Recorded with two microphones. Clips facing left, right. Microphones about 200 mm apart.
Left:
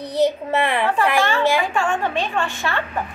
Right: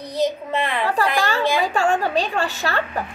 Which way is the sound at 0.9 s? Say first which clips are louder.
Left 2 dB; 40° right (ahead or behind).